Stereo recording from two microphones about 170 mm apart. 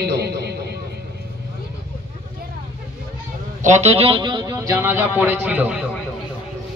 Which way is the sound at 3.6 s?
45° right (ahead or behind).